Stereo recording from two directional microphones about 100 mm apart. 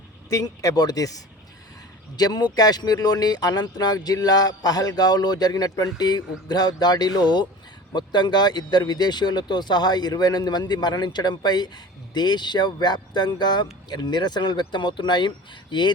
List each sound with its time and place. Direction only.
0.3 s speech: 35° left (ahead or behind); by 15.9 s 50° left (ahead or behind)